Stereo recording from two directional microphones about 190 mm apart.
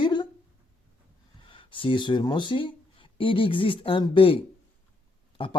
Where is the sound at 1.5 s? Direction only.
25° left (ahead or behind).